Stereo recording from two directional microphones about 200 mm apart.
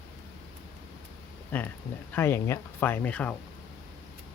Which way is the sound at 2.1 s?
10° left (ahead or behind).